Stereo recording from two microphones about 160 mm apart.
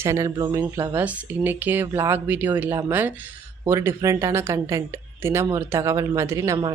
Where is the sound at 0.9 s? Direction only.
10° right (ahead or behind).